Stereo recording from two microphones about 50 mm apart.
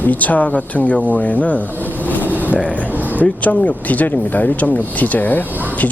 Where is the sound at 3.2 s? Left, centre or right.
Left.